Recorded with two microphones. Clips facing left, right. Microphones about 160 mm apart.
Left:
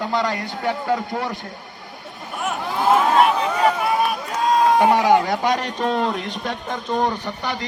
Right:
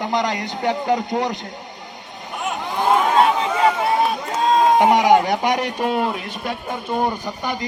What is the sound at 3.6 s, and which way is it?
A man's voice, 25° right (ahead or behind).